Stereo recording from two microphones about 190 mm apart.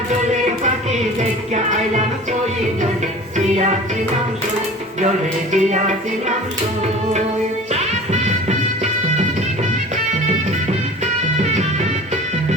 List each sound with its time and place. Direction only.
1.2 s music: 35° right (ahead or behind)
3.3 s music: 35° right (ahead or behind)
4.9 s music: 40° right (ahead or behind)
7.7 s music: 35° right (ahead or behind)